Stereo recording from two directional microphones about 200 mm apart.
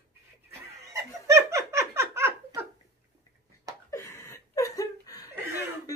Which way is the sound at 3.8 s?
15° left (ahead or behind).